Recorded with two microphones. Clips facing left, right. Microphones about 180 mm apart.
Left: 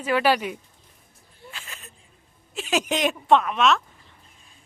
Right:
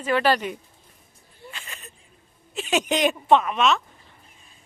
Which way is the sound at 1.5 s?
Centre (ahead or behind).